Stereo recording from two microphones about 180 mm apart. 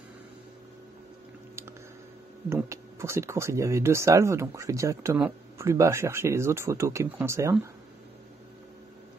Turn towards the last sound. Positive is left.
turn(degrees=-15)  # may be behind; listen again after turning